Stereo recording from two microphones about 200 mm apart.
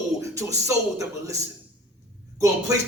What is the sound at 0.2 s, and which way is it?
A man's voice, 15° right (ahead or behind).